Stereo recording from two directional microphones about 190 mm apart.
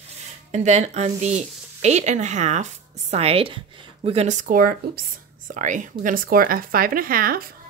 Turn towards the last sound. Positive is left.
turn(degrees=-50)  # may be behind; listen again after turning